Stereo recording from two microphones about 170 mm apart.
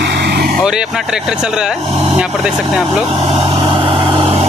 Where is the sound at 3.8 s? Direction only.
30° right (ahead or behind).